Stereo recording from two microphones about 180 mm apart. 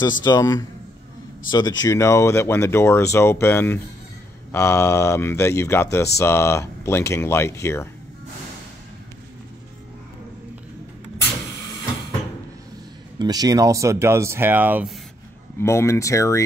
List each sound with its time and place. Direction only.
0.2 s a man's voice: 20° left (ahead or behind)
13.2 s speech: 20° right (ahead or behind)
15.6 s speech: 15° left (ahead or behind)